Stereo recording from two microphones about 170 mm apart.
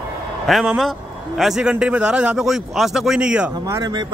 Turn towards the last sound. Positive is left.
turn(degrees=-20)  # may be behind; listen again after turning